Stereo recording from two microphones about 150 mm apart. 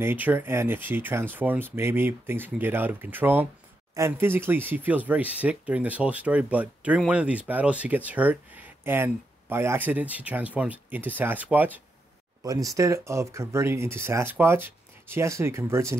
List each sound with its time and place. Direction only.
0.0 s speech: 10° right (ahead or behind)
12.4 s speech: 25° right (ahead or behind)